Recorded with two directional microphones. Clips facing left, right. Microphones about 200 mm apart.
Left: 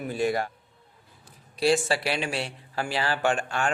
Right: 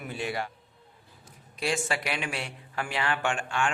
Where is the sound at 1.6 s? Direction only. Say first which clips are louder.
Left 7 dB; 35° left (ahead or behind).